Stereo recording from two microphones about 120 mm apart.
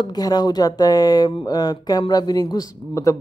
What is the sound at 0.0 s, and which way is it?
A woman's voice, 35° left (ahead or behind).